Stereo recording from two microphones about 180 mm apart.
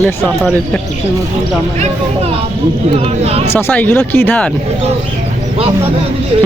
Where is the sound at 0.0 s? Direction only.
Centre (ahead or behind).